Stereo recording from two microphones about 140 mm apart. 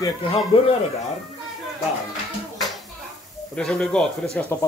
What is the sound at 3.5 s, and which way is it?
Speech, 5° left (ahead or behind).